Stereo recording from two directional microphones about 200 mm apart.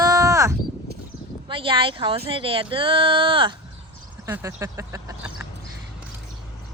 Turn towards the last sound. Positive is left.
turn(degrees=-10)  # may be behind; listen again after turning